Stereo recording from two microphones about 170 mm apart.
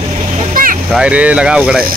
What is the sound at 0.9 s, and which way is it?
Speech, 5° right (ahead or behind).